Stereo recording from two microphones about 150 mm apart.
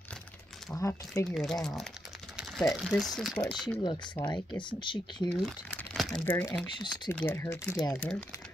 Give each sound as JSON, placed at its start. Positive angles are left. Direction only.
{"t": 0.7, "sound": "speech", "side_deg": 20}
{"t": 1.3, "sound": "speech", "side_deg": 0}
{"t": 3.6, "sound": "speech", "side_deg": 30}
{"t": 5.9, "sound": "crumpling", "side_deg": 0}
{"t": 6.2, "sound": "speech", "side_deg": 15}
{"t": 7.9, "sound": "speech", "side_deg": 10}